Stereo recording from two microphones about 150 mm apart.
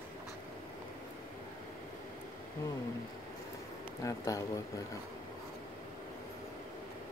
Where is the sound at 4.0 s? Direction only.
20° left (ahead or behind).